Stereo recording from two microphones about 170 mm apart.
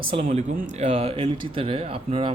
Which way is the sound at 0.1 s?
35° right (ahead or behind).